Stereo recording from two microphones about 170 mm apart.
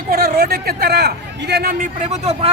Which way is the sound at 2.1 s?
40° right (ahead or behind).